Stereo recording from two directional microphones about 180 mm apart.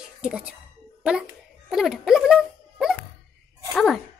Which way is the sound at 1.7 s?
Centre (ahead or behind).